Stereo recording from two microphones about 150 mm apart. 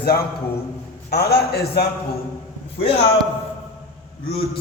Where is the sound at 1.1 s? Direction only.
90° left.